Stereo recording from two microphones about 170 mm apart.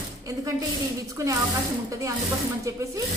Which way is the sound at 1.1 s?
20° right (ahead or behind).